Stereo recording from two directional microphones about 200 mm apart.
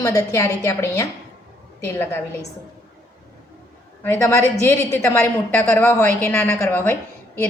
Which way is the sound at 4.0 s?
10° left (ahead or behind).